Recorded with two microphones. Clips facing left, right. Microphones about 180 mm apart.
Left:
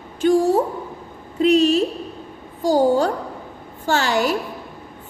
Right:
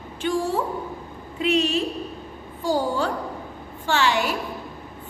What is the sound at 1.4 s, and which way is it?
Speech, 40° left (ahead or behind).